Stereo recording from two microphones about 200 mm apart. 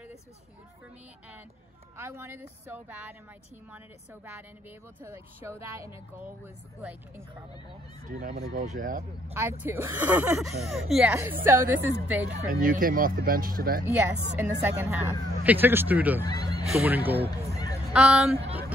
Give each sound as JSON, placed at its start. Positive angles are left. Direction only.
{"t": 2.0, "sound": "speech", "side_deg": -10}
{"t": 8.3, "sound": "speech", "side_deg": -50}
{"t": 8.6, "sound": "speech", "side_deg": -40}
{"t": 9.3, "sound": "speech", "side_deg": -10}
{"t": 12.3, "sound": "speech", "side_deg": -45}
{"t": 13.8, "sound": "speech", "side_deg": -10}
{"t": 16.3, "sound": "speech", "side_deg": 20}
{"t": 16.8, "sound": "speech", "side_deg": -10}
{"t": 17.3, "sound": "a sound", "side_deg": 20}
{"t": 17.9, "sound": "speech", "side_deg": -5}